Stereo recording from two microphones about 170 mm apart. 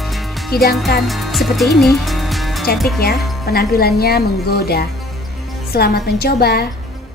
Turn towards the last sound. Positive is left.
turn(degrees=70)  # may be behind; listen again after turning